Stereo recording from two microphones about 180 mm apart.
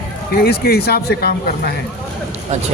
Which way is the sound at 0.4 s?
60° left (ahead or behind).